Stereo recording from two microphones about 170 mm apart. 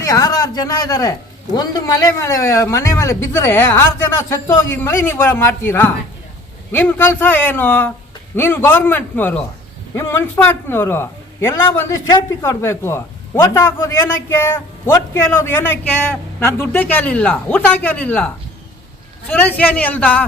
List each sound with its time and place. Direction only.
0.0 s a man's voice: 20° left (ahead or behind)
19.3 s a man's voice: 10° left (ahead or behind)